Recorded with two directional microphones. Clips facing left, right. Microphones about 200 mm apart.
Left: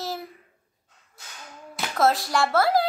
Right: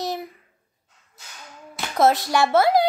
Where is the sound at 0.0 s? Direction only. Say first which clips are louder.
Right 4 dB; 20° right (ahead or behind).